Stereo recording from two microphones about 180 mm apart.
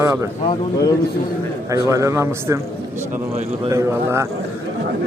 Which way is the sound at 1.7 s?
15° right (ahead or behind).